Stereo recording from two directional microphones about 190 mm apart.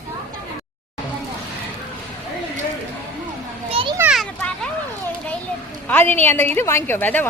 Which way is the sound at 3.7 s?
25° right (ahead or behind).